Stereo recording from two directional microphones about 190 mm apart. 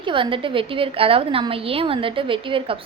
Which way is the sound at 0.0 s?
25° right (ahead or behind).